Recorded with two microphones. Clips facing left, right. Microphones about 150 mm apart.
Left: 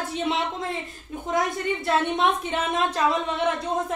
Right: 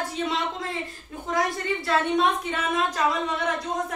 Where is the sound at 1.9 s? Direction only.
25° left (ahead or behind).